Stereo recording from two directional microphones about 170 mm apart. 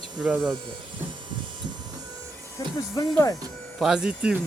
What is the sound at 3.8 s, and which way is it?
Speech, 5° right (ahead or behind).